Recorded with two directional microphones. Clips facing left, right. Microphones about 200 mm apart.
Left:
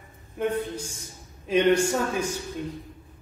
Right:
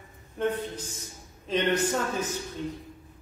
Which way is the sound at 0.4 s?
10° left (ahead or behind).